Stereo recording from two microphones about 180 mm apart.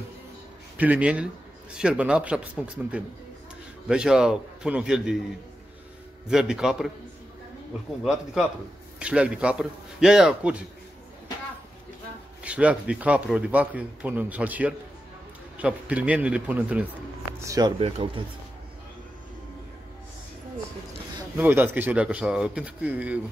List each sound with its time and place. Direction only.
0.7 s a man's voice: 10° right (ahead or behind)
6.2 s a man's voice: 5° right (ahead or behind)
8.0 s a man's voice: 5° right (ahead or behind)
12.4 s speech: 5° right (ahead or behind)
17.4 s speech: 20° right (ahead or behind)
17.7 s speech: 30° right (ahead or behind)
21.4 s speech: 10° right (ahead or behind)